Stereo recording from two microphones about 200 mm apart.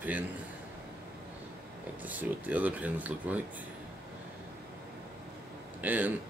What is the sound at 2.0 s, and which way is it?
Speech, 10° right (ahead or behind).